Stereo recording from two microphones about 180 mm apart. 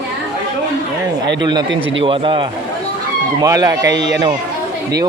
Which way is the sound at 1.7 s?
90° right.